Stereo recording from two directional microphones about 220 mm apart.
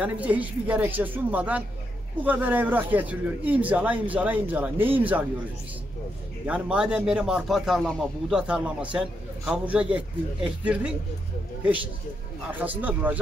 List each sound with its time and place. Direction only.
0.0 s speech: 5° right (ahead or behind)
6.4 s speech: 5° right (ahead or behind)
12.5 s speech: 10° right (ahead or behind)